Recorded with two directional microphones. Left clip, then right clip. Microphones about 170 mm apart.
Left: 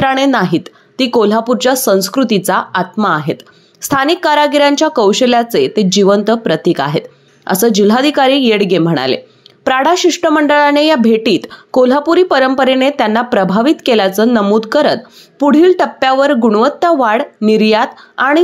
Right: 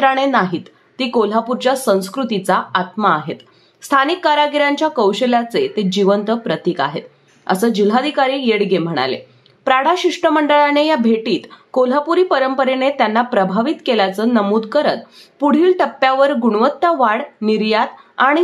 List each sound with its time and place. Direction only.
0.0 s speech: 35° left (ahead or behind)